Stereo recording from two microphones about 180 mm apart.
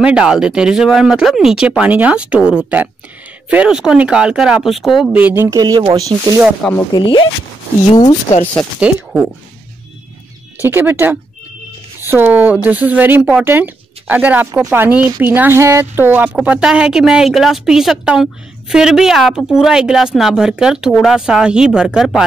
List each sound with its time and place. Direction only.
0.0 s speech: 5° right (ahead or behind)
6.7 s speech: 25° left (ahead or behind)
8.7 s speech: 5° right (ahead or behind)
10.6 s speech: 10° right (ahead or behind)